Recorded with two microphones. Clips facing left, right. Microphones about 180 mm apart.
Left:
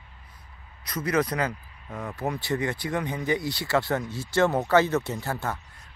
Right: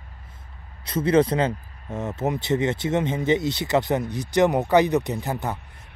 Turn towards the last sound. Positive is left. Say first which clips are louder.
# right 3 dB
turn(degrees=-20)  # may be behind; listen again after turning